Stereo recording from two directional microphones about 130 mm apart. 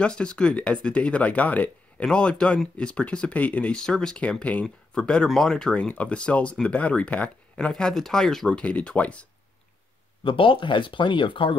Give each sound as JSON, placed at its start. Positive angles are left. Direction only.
{"t": 0.0, "sound": "speech", "side_deg": 10}
{"t": 10.2, "sound": "speech", "side_deg": 40}